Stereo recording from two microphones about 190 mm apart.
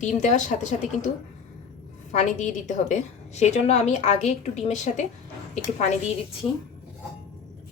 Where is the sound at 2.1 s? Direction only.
40° left (ahead or behind).